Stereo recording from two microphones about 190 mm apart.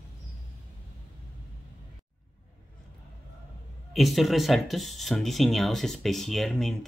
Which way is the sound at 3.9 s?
Centre (ahead or behind).